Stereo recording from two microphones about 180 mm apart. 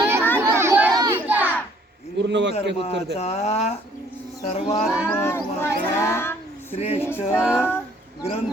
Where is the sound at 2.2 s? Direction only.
75° right (ahead or behind).